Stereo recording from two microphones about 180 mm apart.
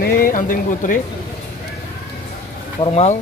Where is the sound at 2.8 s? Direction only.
35° left (ahead or behind).